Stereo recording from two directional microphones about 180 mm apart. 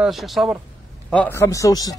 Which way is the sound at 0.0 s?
Centre (ahead or behind).